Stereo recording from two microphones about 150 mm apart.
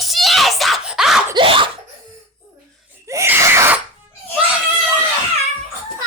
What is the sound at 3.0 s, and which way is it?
Sneeze, 20° right (ahead or behind).